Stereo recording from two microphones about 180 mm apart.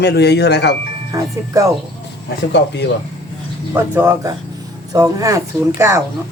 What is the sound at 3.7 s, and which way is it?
Speech, 15° right (ahead or behind).